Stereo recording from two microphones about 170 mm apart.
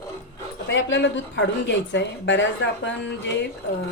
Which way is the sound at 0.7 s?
90° left.